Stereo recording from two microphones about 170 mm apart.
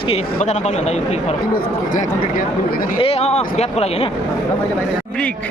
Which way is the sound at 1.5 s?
50° left (ahead or behind).